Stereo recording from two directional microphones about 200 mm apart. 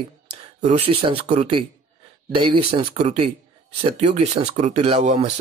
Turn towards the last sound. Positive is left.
turn(degrees=-30)  # may be behind; listen again after turning